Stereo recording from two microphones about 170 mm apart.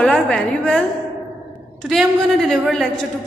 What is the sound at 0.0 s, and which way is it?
A woman's voice, 5° left (ahead or behind).